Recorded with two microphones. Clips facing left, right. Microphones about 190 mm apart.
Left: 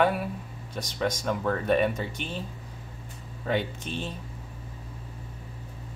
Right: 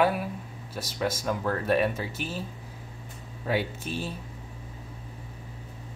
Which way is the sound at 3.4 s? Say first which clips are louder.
Even; 5° right (ahead or behind).